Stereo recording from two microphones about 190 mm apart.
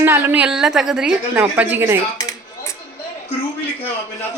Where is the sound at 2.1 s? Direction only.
20° left (ahead or behind).